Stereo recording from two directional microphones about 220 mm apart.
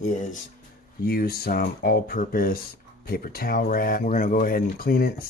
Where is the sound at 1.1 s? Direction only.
45° left (ahead or behind).